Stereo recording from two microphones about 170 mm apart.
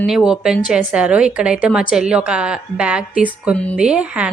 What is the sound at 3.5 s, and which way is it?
Speech, 10° left (ahead or behind).